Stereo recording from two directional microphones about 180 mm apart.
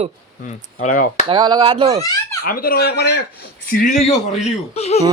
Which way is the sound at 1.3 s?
25° right (ahead or behind).